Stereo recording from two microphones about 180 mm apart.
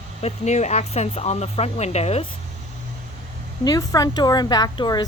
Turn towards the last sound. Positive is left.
turn(degrees=25)  # may be behind; listen again after turning